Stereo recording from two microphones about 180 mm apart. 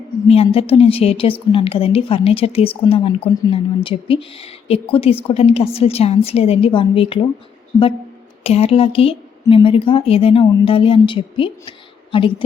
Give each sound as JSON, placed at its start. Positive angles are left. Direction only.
{"t": 0.4, "sound": "a woman's voice", "side_deg": 30}
{"t": 8.4, "sound": "a woman's voice", "side_deg": 35}